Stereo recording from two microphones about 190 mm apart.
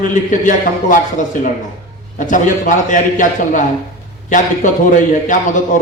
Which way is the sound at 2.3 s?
45° left (ahead or behind).